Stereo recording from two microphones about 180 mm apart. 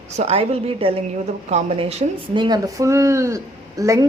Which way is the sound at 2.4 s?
20° right (ahead or behind).